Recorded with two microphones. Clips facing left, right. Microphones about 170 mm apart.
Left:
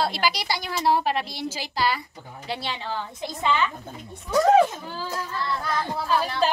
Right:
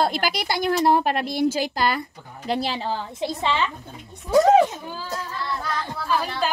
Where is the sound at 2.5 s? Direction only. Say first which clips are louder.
Right 5 dB; 35° right (ahead or behind).